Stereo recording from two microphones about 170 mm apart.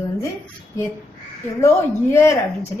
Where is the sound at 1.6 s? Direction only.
15° left (ahead or behind).